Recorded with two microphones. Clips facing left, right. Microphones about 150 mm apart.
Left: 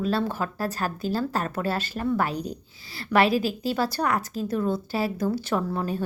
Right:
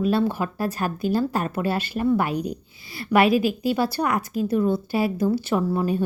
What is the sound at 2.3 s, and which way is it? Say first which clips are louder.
Speech: right 5 dB; 55° right (ahead or behind).